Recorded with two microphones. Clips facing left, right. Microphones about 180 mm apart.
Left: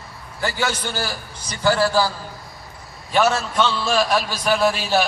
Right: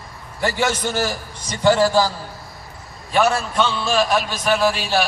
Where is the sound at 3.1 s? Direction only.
Centre (ahead or behind).